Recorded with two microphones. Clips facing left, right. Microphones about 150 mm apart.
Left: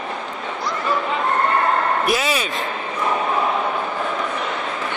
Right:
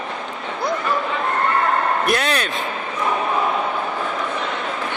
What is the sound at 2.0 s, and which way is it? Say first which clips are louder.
Speech: even; 5° left (ahead or behind).